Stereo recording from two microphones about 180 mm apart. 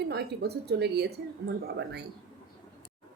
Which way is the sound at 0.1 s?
65° right (ahead or behind).